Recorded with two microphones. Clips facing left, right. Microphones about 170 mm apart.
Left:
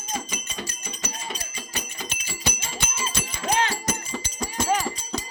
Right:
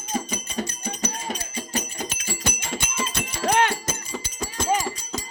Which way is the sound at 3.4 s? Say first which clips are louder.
Right 4 dB; 60° right (ahead or behind).